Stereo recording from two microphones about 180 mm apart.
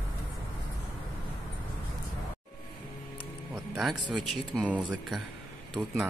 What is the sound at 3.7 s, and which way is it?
Speech, centre (ahead or behind).